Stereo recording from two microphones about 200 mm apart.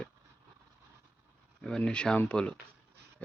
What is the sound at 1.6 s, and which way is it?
Speech, 5° left (ahead or behind).